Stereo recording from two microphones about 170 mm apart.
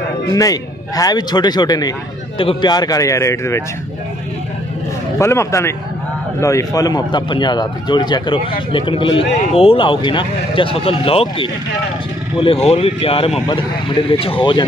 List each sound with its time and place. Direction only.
0.3 s a man's voice: 20° left (ahead or behind)
5.2 s a man's voice: 15° left (ahead or behind)